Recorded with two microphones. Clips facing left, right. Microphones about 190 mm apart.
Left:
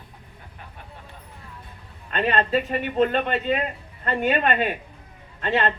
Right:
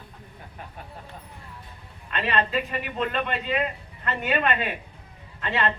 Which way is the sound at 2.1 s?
40° left (ahead or behind).